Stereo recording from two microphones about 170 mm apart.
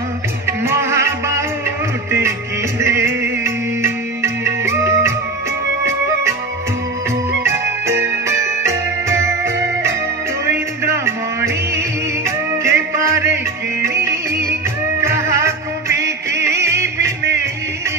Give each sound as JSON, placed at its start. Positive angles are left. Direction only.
{"t": 0.5, "sound": "music", "side_deg": -15}
{"t": 2.8, "sound": "music", "side_deg": -15}
{"t": 7.4, "sound": "music", "side_deg": -15}
{"t": 15.0, "sound": "music", "side_deg": -15}